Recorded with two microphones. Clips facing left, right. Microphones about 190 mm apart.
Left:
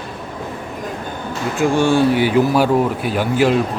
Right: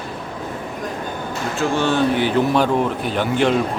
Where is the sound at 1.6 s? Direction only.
15° left (ahead or behind).